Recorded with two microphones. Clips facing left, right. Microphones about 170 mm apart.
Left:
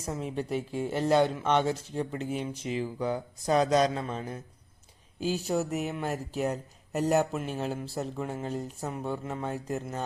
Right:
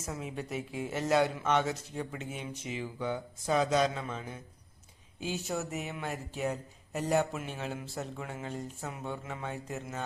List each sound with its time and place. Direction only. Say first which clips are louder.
0.0 s speech: left 5 dB; 30° left (ahead or behind)